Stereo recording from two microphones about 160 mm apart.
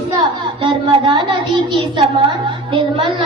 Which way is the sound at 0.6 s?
30° right (ahead or behind).